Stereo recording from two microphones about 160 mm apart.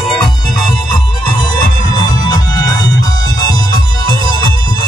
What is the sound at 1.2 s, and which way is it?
Music, 25° left (ahead or behind).